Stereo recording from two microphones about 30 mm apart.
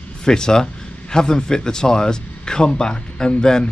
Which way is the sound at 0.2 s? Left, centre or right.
Left.